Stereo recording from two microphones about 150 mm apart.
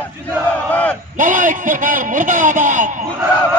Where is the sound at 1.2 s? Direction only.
60° right (ahead or behind).